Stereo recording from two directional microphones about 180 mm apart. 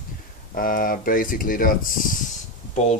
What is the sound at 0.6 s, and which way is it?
Speech, 50° left (ahead or behind).